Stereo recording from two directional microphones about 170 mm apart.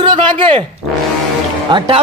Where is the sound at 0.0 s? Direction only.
30° right (ahead or behind).